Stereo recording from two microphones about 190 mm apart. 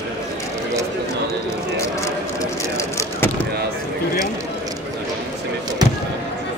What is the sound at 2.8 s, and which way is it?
Vehicle, 15° left (ahead or behind).